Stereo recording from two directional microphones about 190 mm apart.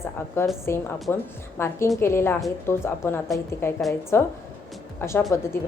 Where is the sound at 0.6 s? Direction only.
15° left (ahead or behind).